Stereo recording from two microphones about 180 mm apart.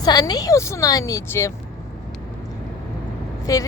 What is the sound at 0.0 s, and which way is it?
A woman's voice, 20° left (ahead or behind).